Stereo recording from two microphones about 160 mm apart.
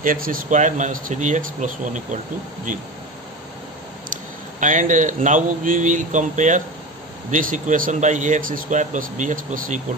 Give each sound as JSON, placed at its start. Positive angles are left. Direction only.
{"t": 0.0, "sound": "speech", "side_deg": -60}
{"t": 4.6, "sound": "speech", "side_deg": -50}